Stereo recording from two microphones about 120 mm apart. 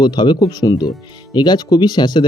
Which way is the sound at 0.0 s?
35° left (ahead or behind).